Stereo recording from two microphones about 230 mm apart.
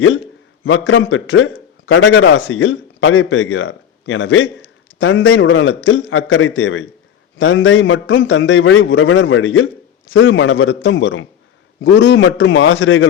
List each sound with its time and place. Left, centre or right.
0.6 s a man's voice: left